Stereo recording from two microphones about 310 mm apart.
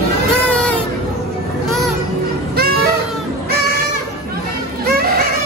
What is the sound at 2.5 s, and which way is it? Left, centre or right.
Music, right.